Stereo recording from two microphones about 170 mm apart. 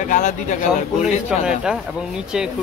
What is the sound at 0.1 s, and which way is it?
Speech, 50° left (ahead or behind).